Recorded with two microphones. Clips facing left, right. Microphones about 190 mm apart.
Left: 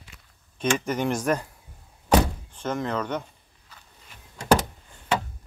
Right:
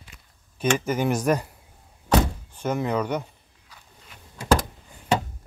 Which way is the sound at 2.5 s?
10° right (ahead or behind).